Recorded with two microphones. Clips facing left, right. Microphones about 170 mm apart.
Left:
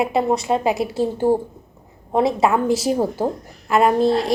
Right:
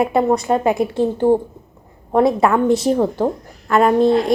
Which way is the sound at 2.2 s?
5° left (ahead or behind).